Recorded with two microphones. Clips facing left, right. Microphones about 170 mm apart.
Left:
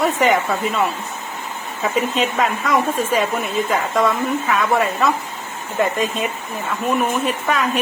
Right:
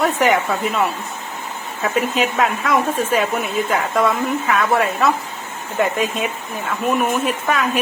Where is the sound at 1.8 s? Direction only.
Centre (ahead or behind).